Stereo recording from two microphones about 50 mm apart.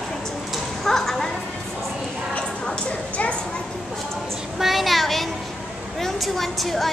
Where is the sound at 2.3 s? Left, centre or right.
Left.